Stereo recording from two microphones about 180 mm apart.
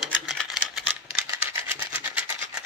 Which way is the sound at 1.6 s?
10° right (ahead or behind).